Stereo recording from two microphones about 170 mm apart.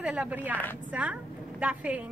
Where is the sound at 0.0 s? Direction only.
5° right (ahead or behind).